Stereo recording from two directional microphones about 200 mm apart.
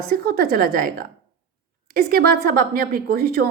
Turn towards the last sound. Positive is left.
turn(degrees=-50)  # may be behind; listen again after turning